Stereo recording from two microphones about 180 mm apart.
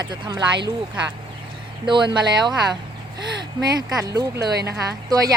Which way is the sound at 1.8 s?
25° right (ahead or behind).